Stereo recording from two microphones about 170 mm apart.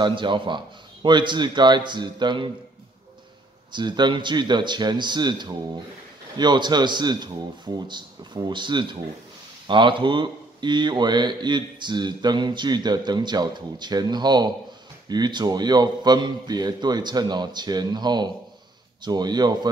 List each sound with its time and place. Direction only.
0.0 s speech: 30° right (ahead or behind)
3.7 s speech: 25° right (ahead or behind)